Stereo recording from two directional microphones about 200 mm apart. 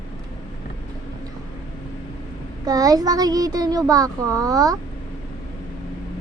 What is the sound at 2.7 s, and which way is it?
A child's voice, 20° right (ahead or behind).